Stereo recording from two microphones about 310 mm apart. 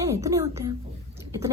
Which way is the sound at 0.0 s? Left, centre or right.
Centre.